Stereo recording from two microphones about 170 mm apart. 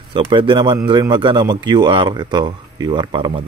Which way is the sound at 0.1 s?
30° right (ahead or behind).